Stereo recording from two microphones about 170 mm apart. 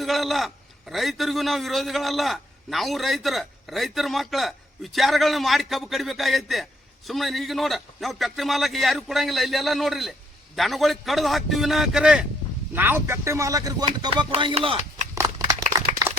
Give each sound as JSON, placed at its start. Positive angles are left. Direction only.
{"t": 0.0, "sound": "a man's voice", "side_deg": 0}
{"t": 15.1, "sound": "crumpling", "side_deg": -20}